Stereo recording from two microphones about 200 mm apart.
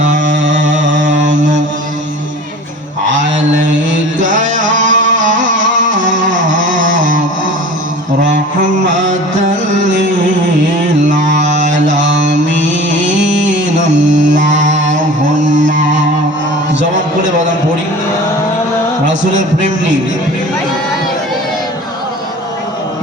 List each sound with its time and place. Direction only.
0.6 s a sound: 40° right (ahead or behind)
1.0 s mantra: 40° right (ahead or behind)
1.3 s mantra: 65° right (ahead or behind)
3.2 s mantra: 65° right (ahead or behind)
4.3 s music: 40° right (ahead or behind)
4.7 s music: 65° right (ahead or behind)
5.2 s music: 40° right (ahead or behind)
6.9 s a sound: 40° right (ahead or behind)
9.4 s music: 40° right (ahead or behind)
11.3 s mantra: 35° right (ahead or behind)
12.3 s music: 65° right (ahead or behind)
14.0 s mantra: 35° right (ahead or behind)
14.6 s a sound: 35° right (ahead or behind)
19.0 s music: 40° right (ahead or behind)